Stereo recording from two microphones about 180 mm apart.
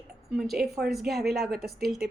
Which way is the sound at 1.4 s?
60° right (ahead or behind).